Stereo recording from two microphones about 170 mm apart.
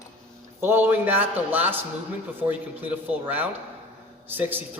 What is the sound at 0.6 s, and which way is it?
A man's voice, 15° right (ahead or behind).